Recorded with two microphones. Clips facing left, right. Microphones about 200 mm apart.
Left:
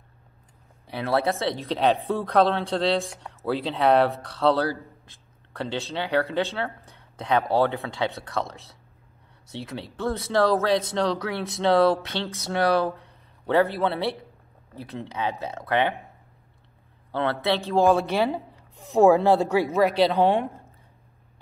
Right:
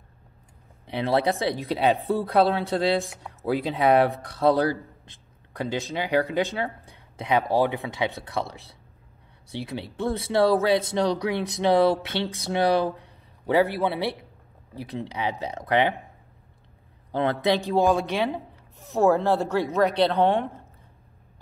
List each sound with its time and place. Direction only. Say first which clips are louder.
0.8 s a man's voice: right 1 dB; 20° right (ahead or behind)
17.1 s speech: right 2 dB; 15° right (ahead or behind)
17.7 s a woman's voice: left 6 dB; centre (ahead or behind)